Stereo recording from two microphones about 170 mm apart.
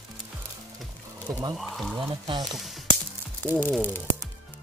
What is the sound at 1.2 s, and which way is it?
Speech, 20° right (ahead or behind).